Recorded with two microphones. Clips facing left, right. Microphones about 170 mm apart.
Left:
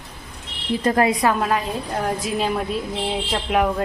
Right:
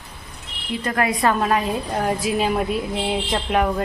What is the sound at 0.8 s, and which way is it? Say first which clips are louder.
Speech: left 4 dB; 30° left (ahead or behind).